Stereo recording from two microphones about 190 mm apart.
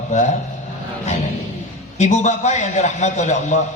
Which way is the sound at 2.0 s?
35° left (ahead or behind).